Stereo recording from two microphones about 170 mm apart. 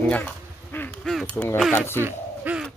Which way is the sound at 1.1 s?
10° left (ahead or behind).